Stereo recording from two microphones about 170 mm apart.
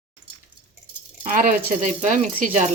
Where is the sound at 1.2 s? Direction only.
50° right (ahead or behind).